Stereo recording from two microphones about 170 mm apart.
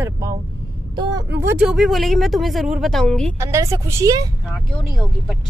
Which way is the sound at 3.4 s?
20° right (ahead or behind).